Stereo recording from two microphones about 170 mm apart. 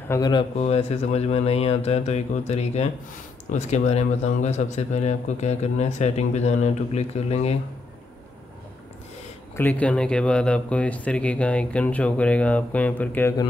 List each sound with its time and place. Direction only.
0.1 s speech: 25° left (ahead or behind)
0.6 s a man's voice: 40° left (ahead or behind)
9.6 s speech: 10° left (ahead or behind)